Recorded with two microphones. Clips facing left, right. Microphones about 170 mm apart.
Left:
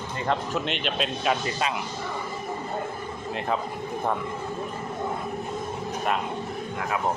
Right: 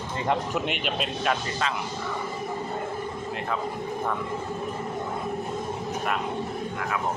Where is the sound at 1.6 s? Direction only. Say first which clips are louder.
Even; 15° left (ahead or behind).